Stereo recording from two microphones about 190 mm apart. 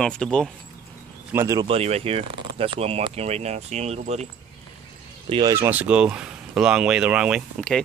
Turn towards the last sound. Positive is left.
turn(degrees=0)  # may be behind; listen again after turning